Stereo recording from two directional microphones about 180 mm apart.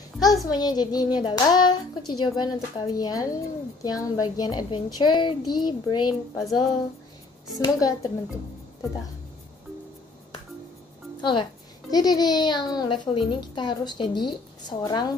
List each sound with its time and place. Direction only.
0.2 s a child's voice: 20° left (ahead or behind)
7.5 s a child's voice: 20° left (ahead or behind)
11.1 s a child's voice: 25° left (ahead or behind)